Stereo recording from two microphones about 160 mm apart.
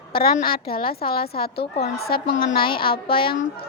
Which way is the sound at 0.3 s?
65° left (ahead or behind).